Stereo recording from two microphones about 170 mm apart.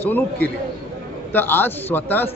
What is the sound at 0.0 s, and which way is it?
A man's voice, 10° left (ahead or behind).